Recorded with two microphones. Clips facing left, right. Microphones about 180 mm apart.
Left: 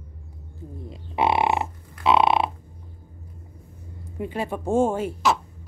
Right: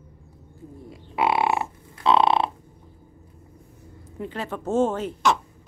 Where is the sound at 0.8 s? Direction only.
20° left (ahead or behind).